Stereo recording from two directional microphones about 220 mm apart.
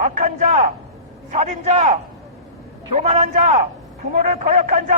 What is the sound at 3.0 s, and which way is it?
A man's voice, 30° right (ahead or behind).